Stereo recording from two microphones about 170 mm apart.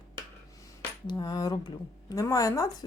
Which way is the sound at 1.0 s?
25° left (ahead or behind).